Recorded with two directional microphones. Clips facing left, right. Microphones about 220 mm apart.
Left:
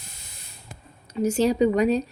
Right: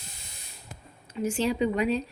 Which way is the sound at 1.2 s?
40° left (ahead or behind).